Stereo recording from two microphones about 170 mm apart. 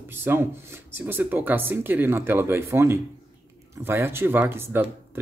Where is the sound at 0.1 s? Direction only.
15° right (ahead or behind).